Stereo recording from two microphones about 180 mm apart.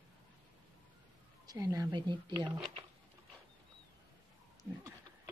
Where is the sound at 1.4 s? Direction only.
20° right (ahead or behind).